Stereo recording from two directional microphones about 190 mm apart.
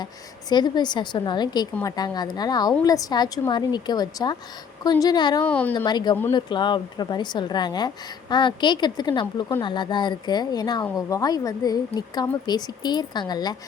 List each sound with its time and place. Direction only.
0.0 s a woman's voice: 20° left (ahead or behind)
5.5 s a woman's voice: 5° left (ahead or behind)
5.7 s a woman's voice: 20° left (ahead or behind)